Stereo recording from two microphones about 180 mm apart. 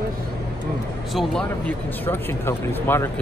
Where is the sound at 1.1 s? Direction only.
Centre (ahead or behind).